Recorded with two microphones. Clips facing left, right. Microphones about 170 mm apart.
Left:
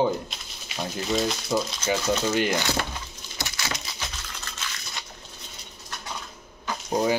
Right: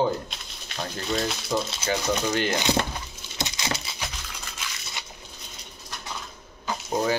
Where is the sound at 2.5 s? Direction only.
20° right (ahead or behind).